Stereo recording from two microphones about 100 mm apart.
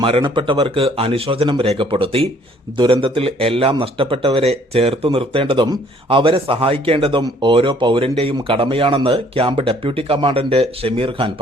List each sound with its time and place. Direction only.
0.0 s speech: 55° right (ahead or behind)
2.7 s a man's voice: 55° right (ahead or behind); by 4.9 s 90° right
5.0 s speech: 65° right (ahead or behind)